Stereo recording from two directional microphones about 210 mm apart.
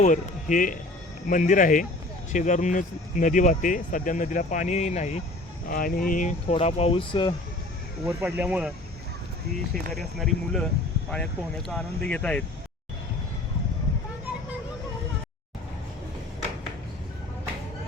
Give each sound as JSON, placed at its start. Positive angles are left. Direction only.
{"t": 0.0, "sound": "speech", "side_deg": 35}
{"t": 8.0, "sound": "speech", "side_deg": -5}
{"t": 9.9, "sound": "speech", "side_deg": 0}